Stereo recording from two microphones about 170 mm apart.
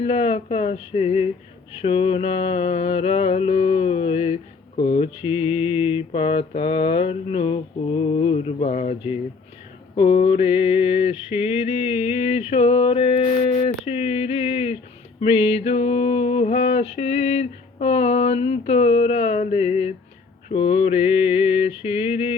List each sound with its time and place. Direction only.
0.0 s mantra: 35° left (ahead or behind)